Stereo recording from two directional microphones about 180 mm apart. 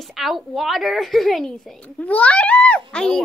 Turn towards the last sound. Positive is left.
turn(degrees=5)  # may be behind; listen again after turning